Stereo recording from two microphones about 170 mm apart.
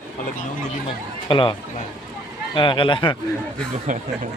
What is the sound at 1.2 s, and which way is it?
Speech, 30° left (ahead or behind).